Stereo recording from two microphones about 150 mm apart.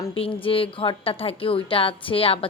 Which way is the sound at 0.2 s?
35° left (ahead or behind).